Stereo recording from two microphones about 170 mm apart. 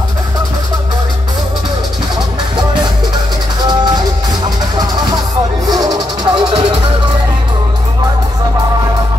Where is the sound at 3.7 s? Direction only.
25° right (ahead or behind).